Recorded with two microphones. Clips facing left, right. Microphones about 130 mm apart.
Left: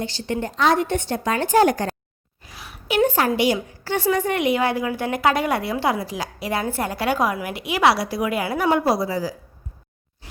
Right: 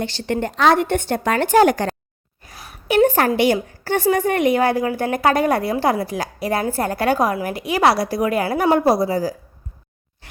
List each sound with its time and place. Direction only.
0.0 s a woman's voice: 65° right (ahead or behind); by 2.0 s 80° right
2.4 s a woman's voice: 45° right (ahead or behind)